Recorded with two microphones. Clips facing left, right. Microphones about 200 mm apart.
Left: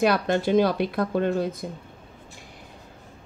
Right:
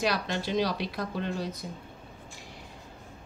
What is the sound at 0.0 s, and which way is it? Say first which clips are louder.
A woman's voice: left 8 dB; 55° left (ahead or behind).